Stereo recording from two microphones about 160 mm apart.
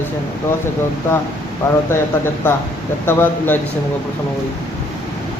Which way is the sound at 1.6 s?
15° left (ahead or behind).